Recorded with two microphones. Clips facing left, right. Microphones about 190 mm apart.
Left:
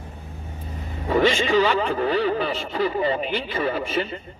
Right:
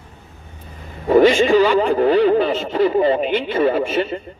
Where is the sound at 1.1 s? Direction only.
45° right (ahead or behind).